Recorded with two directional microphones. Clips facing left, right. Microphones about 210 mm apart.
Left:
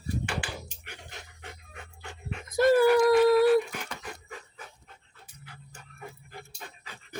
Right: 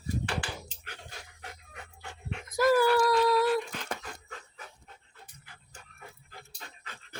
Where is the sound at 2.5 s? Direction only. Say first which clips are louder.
Left 3 dB; 25° left (ahead or behind).